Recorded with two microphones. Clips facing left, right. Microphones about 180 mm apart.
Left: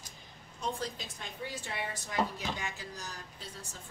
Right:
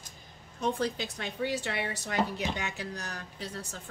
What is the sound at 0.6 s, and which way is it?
A woman's voice, 65° right (ahead or behind).